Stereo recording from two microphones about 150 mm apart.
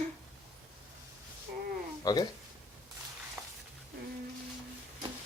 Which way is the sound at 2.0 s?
25° left (ahead or behind).